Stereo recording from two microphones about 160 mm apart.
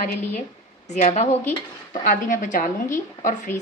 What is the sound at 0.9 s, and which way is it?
A woman's voice, 45° left (ahead or behind).